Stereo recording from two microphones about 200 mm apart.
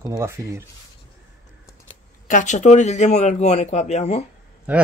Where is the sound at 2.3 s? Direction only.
35° left (ahead or behind).